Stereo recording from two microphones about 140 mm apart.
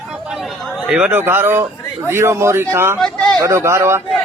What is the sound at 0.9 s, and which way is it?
A man's voice, 10° right (ahead or behind).